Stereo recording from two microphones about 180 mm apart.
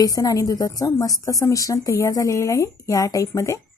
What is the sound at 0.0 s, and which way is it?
A woman's voice, 20° left (ahead or behind).